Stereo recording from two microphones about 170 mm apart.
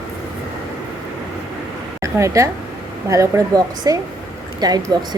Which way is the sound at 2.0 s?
20° right (ahead or behind).